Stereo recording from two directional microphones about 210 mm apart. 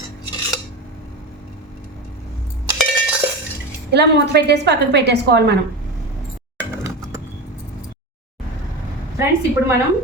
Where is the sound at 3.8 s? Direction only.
55° right (ahead or behind).